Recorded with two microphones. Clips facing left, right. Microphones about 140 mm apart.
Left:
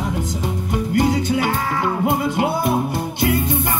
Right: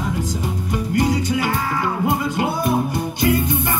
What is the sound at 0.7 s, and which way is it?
Music, 25° left (ahead or behind).